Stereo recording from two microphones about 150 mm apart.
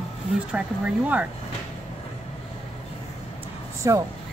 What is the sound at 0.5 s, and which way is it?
Speech, 10° right (ahead or behind).